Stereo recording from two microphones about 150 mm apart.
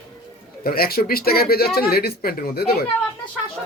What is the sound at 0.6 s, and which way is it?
Speech, 85° left.